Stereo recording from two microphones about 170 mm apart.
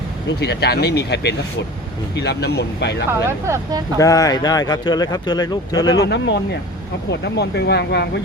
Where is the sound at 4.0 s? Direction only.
20° left (ahead or behind).